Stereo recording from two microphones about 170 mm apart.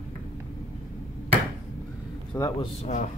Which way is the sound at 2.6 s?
45° left (ahead or behind).